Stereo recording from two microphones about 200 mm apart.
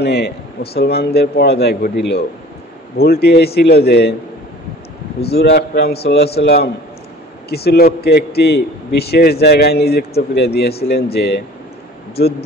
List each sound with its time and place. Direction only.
0.0 s a man's voice: 55° left (ahead or behind)
3.0 s a man's voice: 50° left (ahead or behind)
5.2 s a man's voice: 55° left (ahead or behind)